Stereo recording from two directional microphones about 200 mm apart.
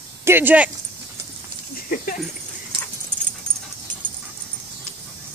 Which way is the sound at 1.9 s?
45° left (ahead or behind).